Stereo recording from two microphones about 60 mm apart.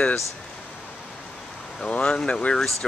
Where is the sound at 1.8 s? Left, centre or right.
Centre.